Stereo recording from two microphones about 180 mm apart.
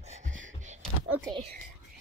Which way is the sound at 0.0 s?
40° right (ahead or behind).